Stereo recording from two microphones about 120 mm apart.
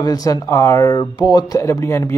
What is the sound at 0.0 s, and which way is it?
Speech, 30° left (ahead or behind).